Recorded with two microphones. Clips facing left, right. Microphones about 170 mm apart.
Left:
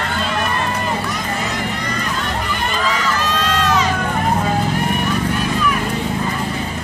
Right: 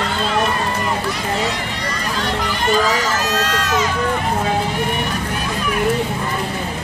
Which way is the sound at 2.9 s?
40° right (ahead or behind).